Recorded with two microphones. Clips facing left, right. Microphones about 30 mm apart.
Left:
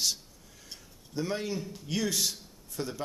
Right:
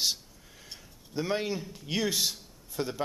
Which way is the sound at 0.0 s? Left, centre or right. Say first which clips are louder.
Right 1 dB; centre.